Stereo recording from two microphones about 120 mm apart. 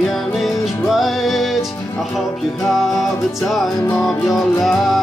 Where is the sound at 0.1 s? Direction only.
Centre (ahead or behind).